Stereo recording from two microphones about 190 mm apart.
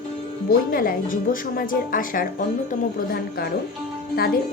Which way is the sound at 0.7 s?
50° left (ahead or behind).